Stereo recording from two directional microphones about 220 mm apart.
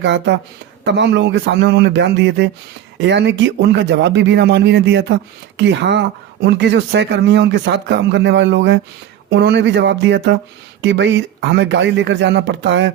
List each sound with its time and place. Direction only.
0.0 s speech: 55° right (ahead or behind)